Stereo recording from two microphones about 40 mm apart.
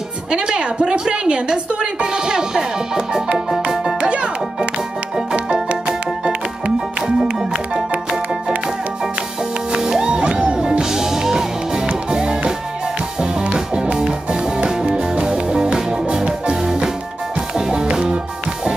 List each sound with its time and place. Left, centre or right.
0.3 s a woman's voice: right
3.3 s music: centre
3.6 s music: right
9.7 s music: centre